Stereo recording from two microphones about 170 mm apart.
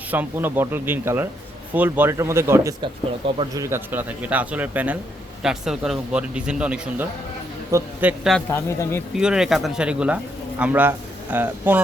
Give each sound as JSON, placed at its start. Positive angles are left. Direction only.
{"t": 0.1, "sound": "speech", "side_deg": -10}
{"t": 2.8, "sound": "speech", "side_deg": -30}
{"t": 3.6, "sound": "speech", "side_deg": -15}
{"t": 8.4, "sound": "speech", "side_deg": 15}
{"t": 9.1, "sound": "speech", "side_deg": -5}